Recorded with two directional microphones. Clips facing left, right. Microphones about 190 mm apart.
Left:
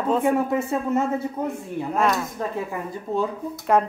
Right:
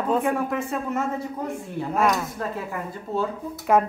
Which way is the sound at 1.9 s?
5° right (ahead or behind).